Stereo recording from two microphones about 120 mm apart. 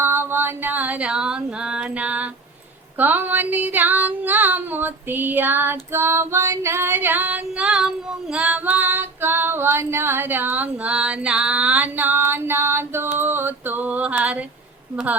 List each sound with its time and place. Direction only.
0.0 s female singing: 20° right (ahead or behind)